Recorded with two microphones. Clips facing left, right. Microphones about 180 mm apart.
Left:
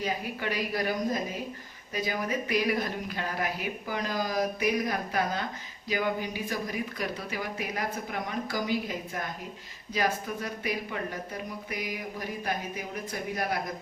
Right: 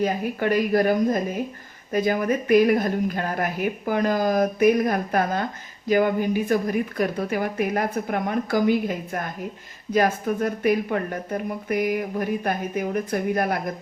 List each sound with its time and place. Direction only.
0.0 s speech: 50° right (ahead or behind)